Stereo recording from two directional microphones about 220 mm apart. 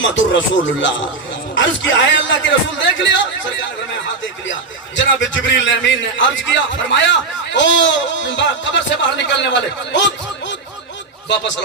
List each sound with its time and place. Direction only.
0.0 s a man's voice: 55° left (ahead or behind)
4.9 s a man's voice: 55° left (ahead or behind)